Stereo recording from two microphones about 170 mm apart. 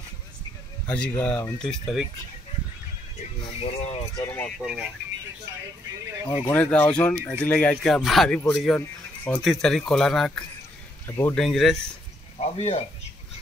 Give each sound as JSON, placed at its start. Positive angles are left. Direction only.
{"t": 0.8, "sound": "speech", "side_deg": 5}
{"t": 3.6, "sound": "speech", "side_deg": 35}
{"t": 4.2, "sound": "speech", "side_deg": 15}
{"t": 4.5, "sound": "speech", "side_deg": 0}
{"t": 6.4, "sound": "speech", "side_deg": 10}
{"t": 11.1, "sound": "speech", "side_deg": 15}
{"t": 11.3, "sound": "speech", "side_deg": 0}
{"t": 12.4, "sound": "speech", "side_deg": 40}